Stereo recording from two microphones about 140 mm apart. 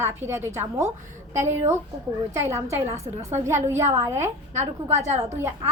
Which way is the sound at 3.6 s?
20° right (ahead or behind).